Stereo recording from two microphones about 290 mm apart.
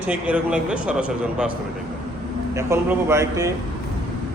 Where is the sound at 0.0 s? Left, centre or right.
Centre.